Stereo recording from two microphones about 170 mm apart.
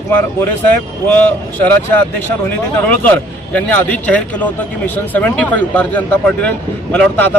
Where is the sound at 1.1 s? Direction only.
10° left (ahead or behind).